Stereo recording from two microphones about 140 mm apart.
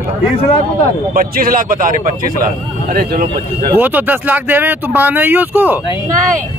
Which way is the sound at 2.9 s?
90° right.